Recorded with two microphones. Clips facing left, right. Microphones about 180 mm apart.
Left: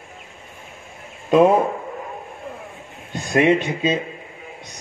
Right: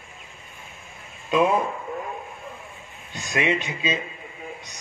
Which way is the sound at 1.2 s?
55° left (ahead or behind).